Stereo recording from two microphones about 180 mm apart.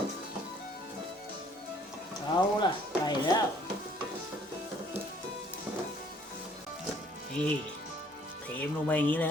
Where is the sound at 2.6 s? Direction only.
25° left (ahead or behind).